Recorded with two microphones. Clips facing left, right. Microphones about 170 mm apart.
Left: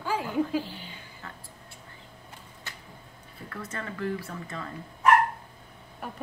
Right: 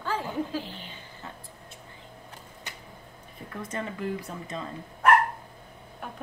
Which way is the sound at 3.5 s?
15° right (ahead or behind).